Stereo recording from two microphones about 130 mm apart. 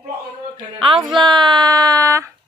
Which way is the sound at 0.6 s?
40° right (ahead or behind).